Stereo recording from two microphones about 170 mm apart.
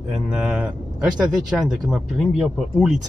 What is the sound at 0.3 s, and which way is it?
Speech, 5° right (ahead or behind).